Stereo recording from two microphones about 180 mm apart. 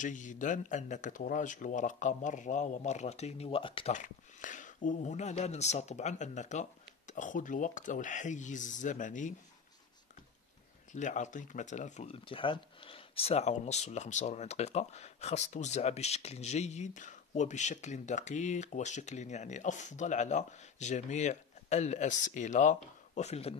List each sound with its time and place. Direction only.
0.0 s speech: 45° left (ahead or behind)
3.9 s speech: 45° left (ahead or behind)
10.9 s speech: 45° left (ahead or behind)